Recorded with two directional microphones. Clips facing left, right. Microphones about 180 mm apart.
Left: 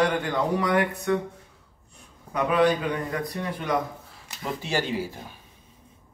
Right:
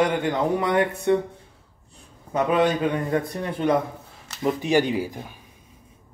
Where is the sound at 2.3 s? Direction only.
25° right (ahead or behind).